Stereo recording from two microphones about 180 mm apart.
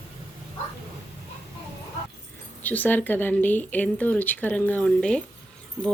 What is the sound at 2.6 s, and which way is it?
Speech, 10° left (ahead or behind).